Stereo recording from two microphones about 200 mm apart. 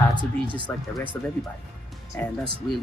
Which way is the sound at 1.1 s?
15° left (ahead or behind).